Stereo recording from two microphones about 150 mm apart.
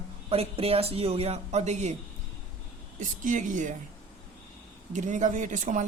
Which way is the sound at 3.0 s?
55° right (ahead or behind).